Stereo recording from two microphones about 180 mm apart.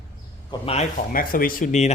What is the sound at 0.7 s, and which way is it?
Speech, 40° left (ahead or behind).